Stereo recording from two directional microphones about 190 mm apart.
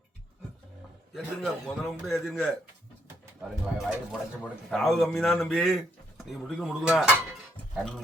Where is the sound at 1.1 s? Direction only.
Centre (ahead or behind).